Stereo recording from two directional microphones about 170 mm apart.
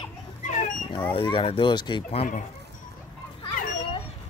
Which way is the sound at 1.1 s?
30° left (ahead or behind).